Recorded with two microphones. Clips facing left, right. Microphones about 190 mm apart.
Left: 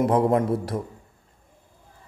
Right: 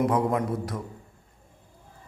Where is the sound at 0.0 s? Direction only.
30° left (ahead or behind).